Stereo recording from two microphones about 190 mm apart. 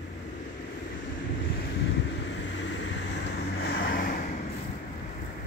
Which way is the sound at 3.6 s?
55° left (ahead or behind).